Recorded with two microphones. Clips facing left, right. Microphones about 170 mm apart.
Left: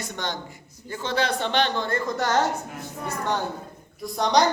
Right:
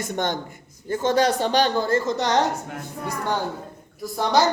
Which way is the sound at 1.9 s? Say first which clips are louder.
Right 3 dB; 20° right (ahead or behind).